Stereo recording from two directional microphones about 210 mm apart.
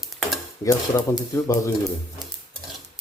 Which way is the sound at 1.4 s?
15° left (ahead or behind).